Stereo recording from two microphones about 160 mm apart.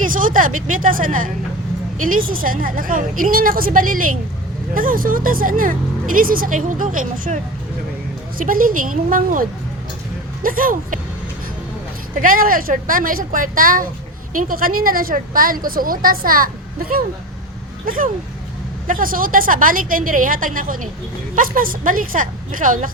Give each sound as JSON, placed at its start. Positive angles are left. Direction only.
{"t": 0.0, "sound": "speech", "side_deg": -55}
{"t": 8.4, "sound": "speech", "side_deg": -60}
{"t": 12.1, "sound": "speech", "side_deg": -60}